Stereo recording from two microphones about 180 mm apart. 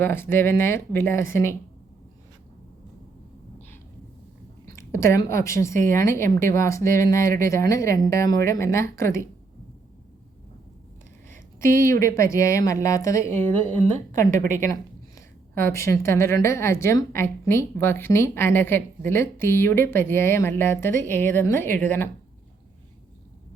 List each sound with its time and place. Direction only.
0.0 s a woman's voice: 15° left (ahead or behind)
4.6 s a woman's voice: 15° left (ahead or behind)
11.3 s a woman's voice: 15° left (ahead or behind)